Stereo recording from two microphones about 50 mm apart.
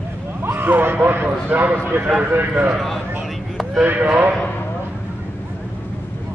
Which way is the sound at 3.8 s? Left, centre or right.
Right.